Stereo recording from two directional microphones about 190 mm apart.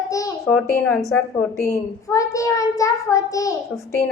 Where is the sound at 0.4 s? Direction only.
10° left (ahead or behind).